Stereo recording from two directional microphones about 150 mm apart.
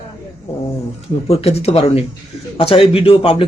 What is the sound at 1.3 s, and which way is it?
A man's voice, 45° left (ahead or behind).